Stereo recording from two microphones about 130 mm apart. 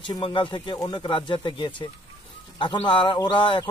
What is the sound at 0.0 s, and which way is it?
Speech, 40° left (ahead or behind).